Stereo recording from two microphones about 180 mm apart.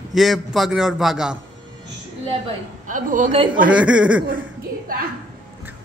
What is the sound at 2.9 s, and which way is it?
Speech, 45° right (ahead or behind).